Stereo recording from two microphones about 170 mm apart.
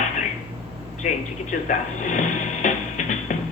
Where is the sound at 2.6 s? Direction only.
50° left (ahead or behind).